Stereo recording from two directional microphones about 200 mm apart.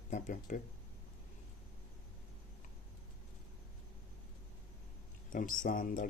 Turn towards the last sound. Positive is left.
turn(degrees=45)  # may be behind; listen again after turning